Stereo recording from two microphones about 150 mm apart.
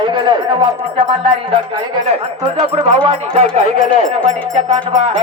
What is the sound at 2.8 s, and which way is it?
Speech, 35° right (ahead or behind).